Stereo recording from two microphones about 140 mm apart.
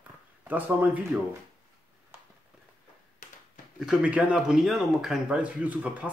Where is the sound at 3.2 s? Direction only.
70° left (ahead or behind).